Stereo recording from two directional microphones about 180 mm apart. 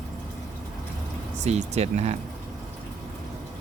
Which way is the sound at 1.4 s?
35° right (ahead or behind).